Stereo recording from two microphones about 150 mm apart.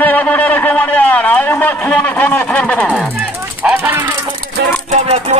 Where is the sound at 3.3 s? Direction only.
10° right (ahead or behind).